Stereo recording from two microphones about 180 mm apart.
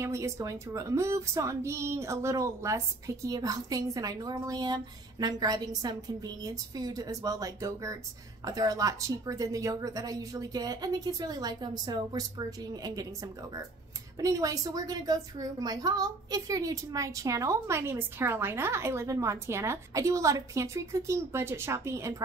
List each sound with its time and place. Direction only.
0.0 s speech: 15° right (ahead or behind)
14.2 s a woman's voice: 20° right (ahead or behind)